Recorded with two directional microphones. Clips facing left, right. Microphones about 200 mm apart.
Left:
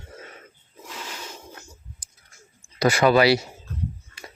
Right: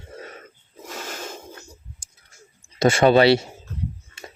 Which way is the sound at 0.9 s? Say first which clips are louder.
Right 4 dB; 45° right (ahead or behind).